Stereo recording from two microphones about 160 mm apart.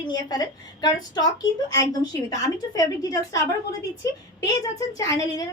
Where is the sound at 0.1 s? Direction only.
25° left (ahead or behind).